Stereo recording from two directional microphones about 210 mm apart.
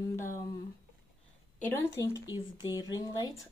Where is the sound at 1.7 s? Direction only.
15° left (ahead or behind).